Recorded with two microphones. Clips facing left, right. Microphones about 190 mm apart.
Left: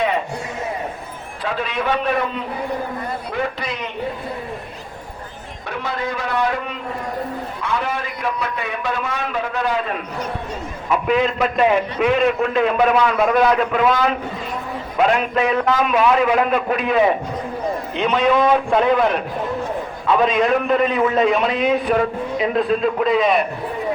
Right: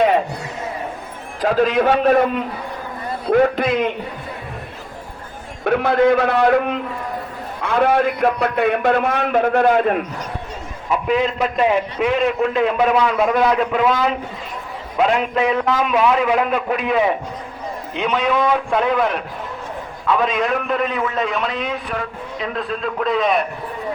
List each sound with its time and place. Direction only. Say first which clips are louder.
1.4 s a man's voice: right 8 dB; 40° right (ahead or behind)
3.2 s a man's voice: right 13 dB; 55° right (ahead or behind)
5.6 s a man's voice: right 11 dB; 55° right (ahead or behind)
11.9 s a man's voice: left 1 dB; 25° right (ahead or behind); by 23.5 s centre (ahead or behind)